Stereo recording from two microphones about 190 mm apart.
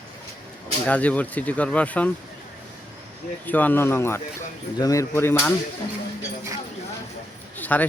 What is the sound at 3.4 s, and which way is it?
Speech, 10° left (ahead or behind).